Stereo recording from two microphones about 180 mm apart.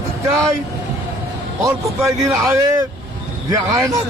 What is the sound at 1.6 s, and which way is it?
Speech, 15° right (ahead or behind).